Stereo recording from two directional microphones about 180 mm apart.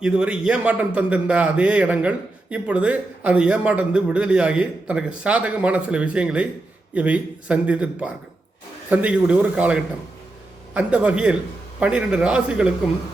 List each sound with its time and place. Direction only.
0.0 s a man's voice: 5° right (ahead or behind)